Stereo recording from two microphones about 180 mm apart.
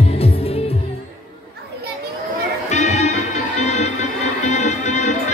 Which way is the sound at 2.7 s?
40° left (ahead or behind).